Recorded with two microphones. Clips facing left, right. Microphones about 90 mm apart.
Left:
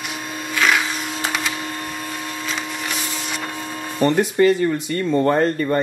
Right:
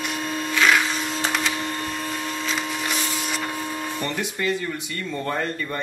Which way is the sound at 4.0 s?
45° left (ahead or behind).